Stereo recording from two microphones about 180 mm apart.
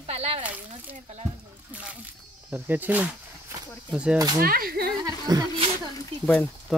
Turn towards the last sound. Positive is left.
turn(degrees=5)  # may be behind; listen again after turning